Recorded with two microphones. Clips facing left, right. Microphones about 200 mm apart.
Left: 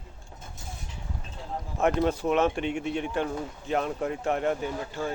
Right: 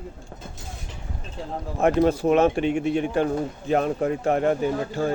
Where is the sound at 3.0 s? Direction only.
40° right (ahead or behind).